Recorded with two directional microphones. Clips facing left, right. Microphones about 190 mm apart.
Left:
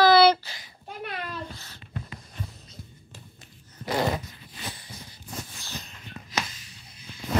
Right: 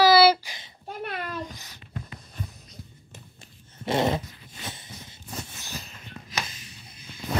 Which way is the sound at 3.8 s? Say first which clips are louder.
Right 2 dB; 25° right (ahead or behind).